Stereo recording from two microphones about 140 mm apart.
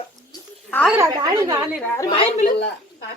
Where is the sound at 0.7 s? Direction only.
15° left (ahead or behind).